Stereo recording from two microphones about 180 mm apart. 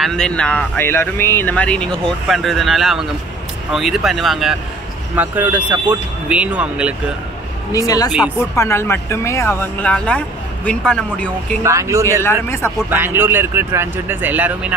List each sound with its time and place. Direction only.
0.0 s speech: 5° left (ahead or behind)
7.7 s speech: 20° left (ahead or behind)
11.6 s speech: 15° right (ahead or behind)
12.2 s speech: 15° left (ahead or behind)
12.9 s speech: 10° right (ahead or behind)